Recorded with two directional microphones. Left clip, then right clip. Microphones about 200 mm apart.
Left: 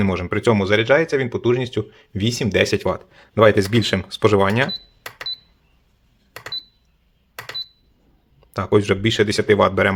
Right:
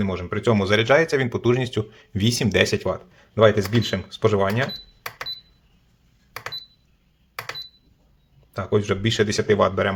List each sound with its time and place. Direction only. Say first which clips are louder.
0.0 s speech: left 4 dB; 25° left (ahead or behind)
8.5 s speech: left 5 dB; 25° left (ahead or behind)